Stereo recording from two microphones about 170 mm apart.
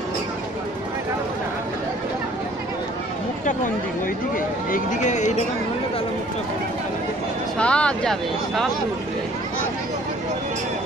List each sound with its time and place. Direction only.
4.6 s speech: 50° left (ahead or behind)
7.5 s speech: 5° left (ahead or behind)